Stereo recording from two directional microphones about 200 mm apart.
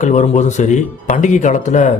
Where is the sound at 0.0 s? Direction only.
35° left (ahead or behind).